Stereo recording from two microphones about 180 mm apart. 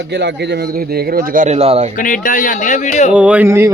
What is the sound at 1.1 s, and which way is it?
Speech, 50° right (ahead or behind).